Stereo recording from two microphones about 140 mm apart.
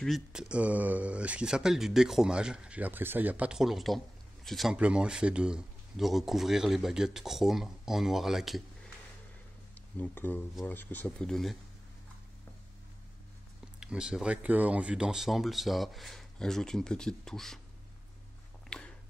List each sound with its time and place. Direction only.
0.0 s speech: centre (ahead or behind)
9.9 s speech: 15° left (ahead or behind)
13.7 s speech: 5° right (ahead or behind)
18.7 s a sound: 5° left (ahead or behind)